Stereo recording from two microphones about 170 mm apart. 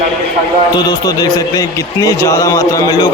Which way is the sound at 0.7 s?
25° left (ahead or behind).